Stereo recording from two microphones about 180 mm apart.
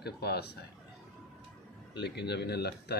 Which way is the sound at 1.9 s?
65° left (ahead or behind).